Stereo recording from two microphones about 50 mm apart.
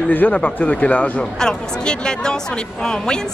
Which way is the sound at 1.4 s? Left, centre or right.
Centre.